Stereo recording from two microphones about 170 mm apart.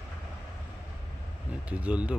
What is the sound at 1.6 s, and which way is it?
Speech, 5° right (ahead or behind).